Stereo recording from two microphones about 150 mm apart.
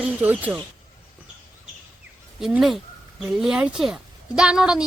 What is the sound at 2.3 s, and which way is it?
Speech, centre (ahead or behind).